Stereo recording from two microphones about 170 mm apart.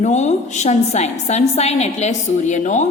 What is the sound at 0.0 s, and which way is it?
A woman's voice, 45° left (ahead or behind).